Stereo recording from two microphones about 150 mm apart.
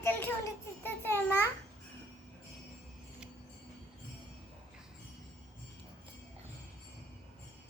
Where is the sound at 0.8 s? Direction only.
15° left (ahead or behind).